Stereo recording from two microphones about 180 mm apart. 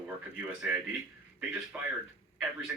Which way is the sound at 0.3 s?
5° right (ahead or behind).